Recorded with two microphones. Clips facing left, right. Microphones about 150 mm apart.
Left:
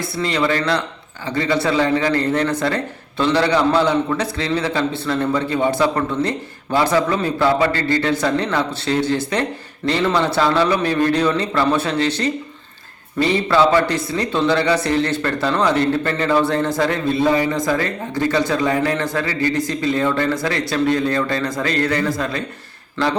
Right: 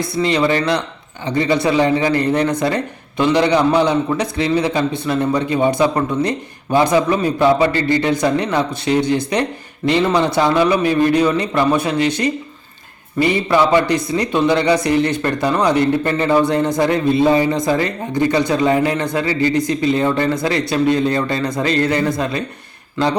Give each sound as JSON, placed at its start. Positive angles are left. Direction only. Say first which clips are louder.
{"t": 0.0, "sound": "a man's voice", "louder": "right 4 dB", "side_deg": -20}